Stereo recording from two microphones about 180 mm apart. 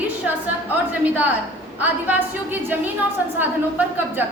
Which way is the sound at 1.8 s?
10° right (ahead or behind).